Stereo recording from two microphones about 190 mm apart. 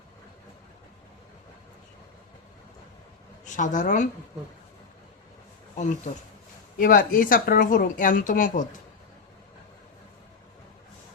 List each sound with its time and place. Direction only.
3.4 s a woman's voice: 40° left (ahead or behind)
5.7 s speech: 40° left (ahead or behind)